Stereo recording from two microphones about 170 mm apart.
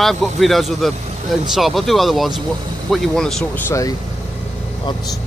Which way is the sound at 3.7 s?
20° left (ahead or behind).